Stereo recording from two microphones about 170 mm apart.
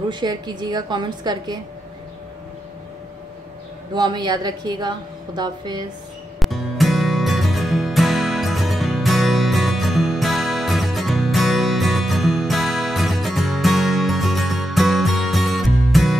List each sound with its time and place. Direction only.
0.1 s a woman's voice: 25° right (ahead or behind)
3.9 s a woman's voice: 25° right (ahead or behind)
6.4 s music: centre (ahead or behind)